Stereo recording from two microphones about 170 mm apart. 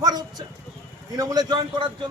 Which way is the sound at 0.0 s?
25° right (ahead or behind).